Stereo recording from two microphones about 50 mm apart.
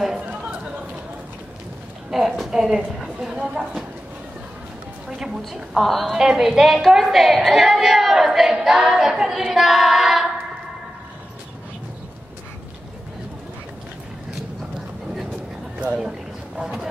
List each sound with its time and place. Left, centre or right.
2.0 s speech: centre
5.1 s a woman's voice: centre
6.1 s a woman's voice: centre
15.8 s a sound: centre